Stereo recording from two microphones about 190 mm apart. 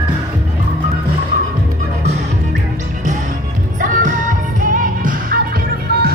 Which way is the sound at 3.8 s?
45° right (ahead or behind).